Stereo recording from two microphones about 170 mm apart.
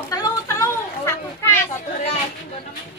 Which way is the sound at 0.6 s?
15° left (ahead or behind).